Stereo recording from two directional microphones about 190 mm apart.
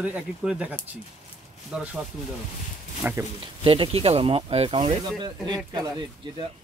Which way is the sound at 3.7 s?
30° right (ahead or behind).